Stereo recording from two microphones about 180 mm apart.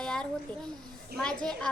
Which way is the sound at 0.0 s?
5° left (ahead or behind).